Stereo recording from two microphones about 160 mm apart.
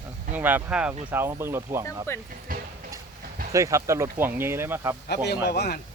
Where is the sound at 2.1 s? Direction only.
15° left (ahead or behind).